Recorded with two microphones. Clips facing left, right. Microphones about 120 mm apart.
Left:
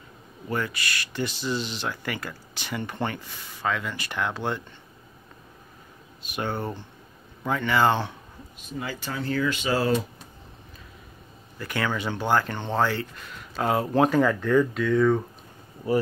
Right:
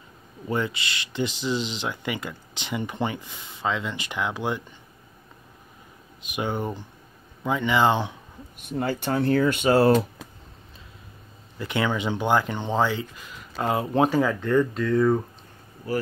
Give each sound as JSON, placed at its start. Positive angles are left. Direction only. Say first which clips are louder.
{"t": 0.5, "sound": "speech", "louder": "right 2 dB", "side_deg": -20}
{"t": 6.2, "sound": "speech", "louder": "right 2 dB", "side_deg": -15}
{"t": 8.5, "sound": "speech", "louder": "right 7 dB", "side_deg": -55}
{"t": 11.5, "sound": "speech", "louder": "right 3 dB", "side_deg": -20}